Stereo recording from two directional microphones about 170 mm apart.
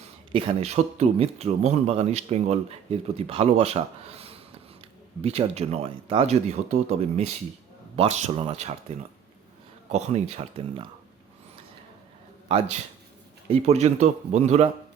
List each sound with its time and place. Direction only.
0.0 s speech: 30° right (ahead or behind)
9.9 s speech: 40° right (ahead or behind)
12.5 s speech: 40° right (ahead or behind)